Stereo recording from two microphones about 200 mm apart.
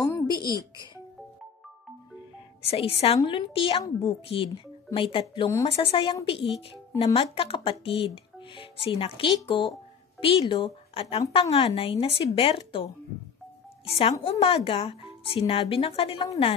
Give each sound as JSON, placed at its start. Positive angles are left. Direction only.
{"t": 0.0, "sound": "a sound", "side_deg": 15}
{"t": 0.4, "sound": "speech", "side_deg": -15}
{"t": 2.6, "sound": "speech", "side_deg": 30}